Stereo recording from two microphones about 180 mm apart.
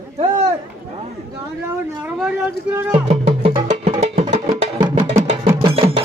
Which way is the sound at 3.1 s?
35° right (ahead or behind).